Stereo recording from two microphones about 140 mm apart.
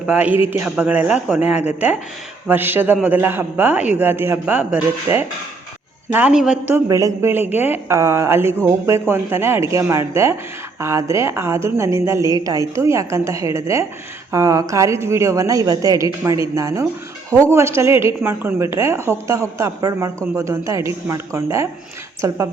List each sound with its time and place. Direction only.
0.1 s a man's voice: 10° right (ahead or behind)
6.7 s a man's voice: 20° right (ahead or behind)